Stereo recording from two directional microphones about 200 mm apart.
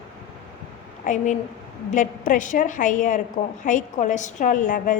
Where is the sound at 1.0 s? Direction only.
40° left (ahead or behind).